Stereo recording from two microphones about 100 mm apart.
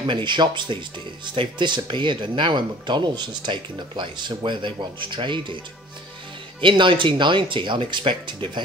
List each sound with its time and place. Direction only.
0.0 s speech: 50° right (ahead or behind)
6.6 s speech: 55° right (ahead or behind)